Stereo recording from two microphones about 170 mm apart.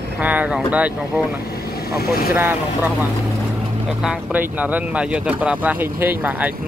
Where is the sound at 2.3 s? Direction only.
10° right (ahead or behind).